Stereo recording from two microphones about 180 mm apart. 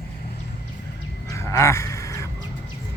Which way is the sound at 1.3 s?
15° left (ahead or behind).